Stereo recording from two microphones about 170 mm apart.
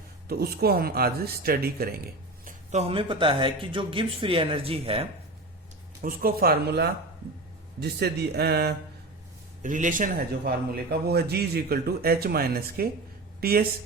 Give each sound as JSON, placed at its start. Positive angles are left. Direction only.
{"t": 0.3, "sound": "speech", "side_deg": -65}
{"t": 2.4, "sound": "speech", "side_deg": -40}
{"t": 6.0, "sound": "speech", "side_deg": -60}
{"t": 9.6, "sound": "speech", "side_deg": -50}
{"t": 10.9, "sound": "speech", "side_deg": -70}